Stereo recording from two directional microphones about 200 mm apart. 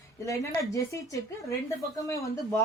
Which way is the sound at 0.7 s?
15° left (ahead or behind).